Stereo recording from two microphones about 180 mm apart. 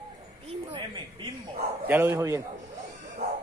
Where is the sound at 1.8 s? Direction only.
10° right (ahead or behind).